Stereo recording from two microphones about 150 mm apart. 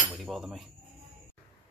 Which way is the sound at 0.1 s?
Centre (ahead or behind).